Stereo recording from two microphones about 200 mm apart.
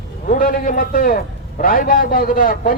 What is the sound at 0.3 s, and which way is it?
A man's voice, 45° left (ahead or behind).